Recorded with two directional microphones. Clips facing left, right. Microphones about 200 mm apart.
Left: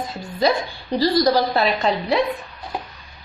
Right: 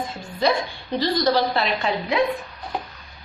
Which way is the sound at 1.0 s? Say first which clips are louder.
Left 3 dB; 40° left (ahead or behind).